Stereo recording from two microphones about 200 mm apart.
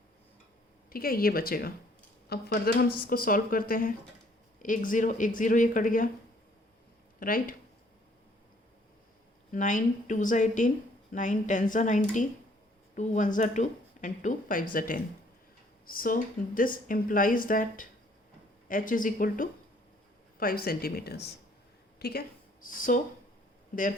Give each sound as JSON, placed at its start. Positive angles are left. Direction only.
{"t": 0.9, "sound": "speech", "side_deg": 50}
{"t": 7.2, "sound": "speech", "side_deg": 45}
{"t": 9.5, "sound": "a woman's voice", "side_deg": 40}